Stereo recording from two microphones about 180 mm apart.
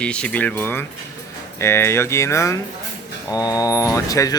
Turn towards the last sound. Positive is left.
turn(degrees=20)  # may be behind; listen again after turning